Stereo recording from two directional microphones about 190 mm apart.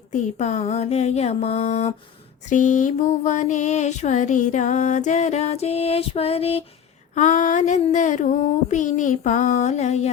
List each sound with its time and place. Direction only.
0.1 s mantra: 40° left (ahead or behind)